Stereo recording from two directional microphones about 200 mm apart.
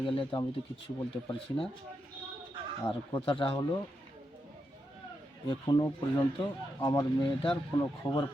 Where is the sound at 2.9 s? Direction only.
25° left (ahead or behind).